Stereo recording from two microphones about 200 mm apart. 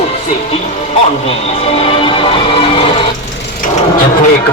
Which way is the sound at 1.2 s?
30° left (ahead or behind).